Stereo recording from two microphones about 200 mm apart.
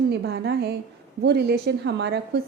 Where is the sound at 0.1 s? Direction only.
55° right (ahead or behind).